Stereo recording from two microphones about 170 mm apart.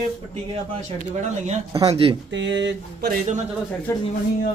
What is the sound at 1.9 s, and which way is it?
Speech, 35° right (ahead or behind).